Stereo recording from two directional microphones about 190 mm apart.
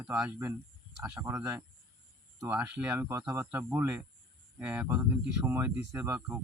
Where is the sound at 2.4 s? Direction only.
10° right (ahead or behind).